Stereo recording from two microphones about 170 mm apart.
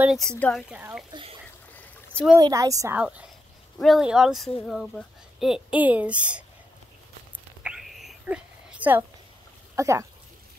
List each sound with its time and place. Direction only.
0.0 s speech: centre (ahead or behind)
0.7 s speech: 10° right (ahead or behind)
1.7 s a sound: 10° left (ahead or behind)
2.3 s a woman's voice: 20° right (ahead or behind)
3.0 s speech: 5° right (ahead or behind)
7.6 s a sound: 5° right (ahead or behind)
9.8 s speech: 15° right (ahead or behind)